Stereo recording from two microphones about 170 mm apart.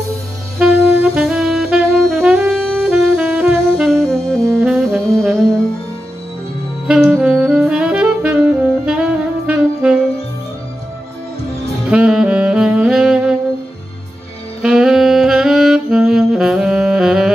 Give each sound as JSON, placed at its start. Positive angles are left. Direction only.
{"t": 0.6, "sound": "saxophone", "side_deg": -5}
{"t": 6.9, "sound": "saxophone", "side_deg": -5}
{"t": 11.8, "sound": "saxophone", "side_deg": -5}
{"t": 14.6, "sound": "saxophone", "side_deg": -5}